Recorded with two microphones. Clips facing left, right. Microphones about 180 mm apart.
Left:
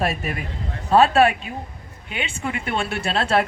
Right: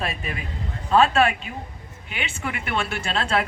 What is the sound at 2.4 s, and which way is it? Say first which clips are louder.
Speech: left 2 dB; 30° left (ahead or behind).